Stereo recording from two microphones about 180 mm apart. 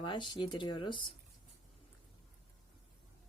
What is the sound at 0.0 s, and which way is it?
Speech, 25° left (ahead or behind).